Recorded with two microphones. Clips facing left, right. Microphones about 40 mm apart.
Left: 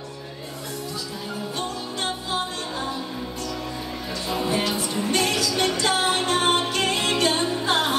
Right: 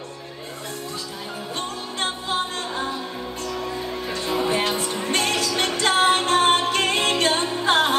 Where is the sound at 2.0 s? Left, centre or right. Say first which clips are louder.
Right 3 dB; right.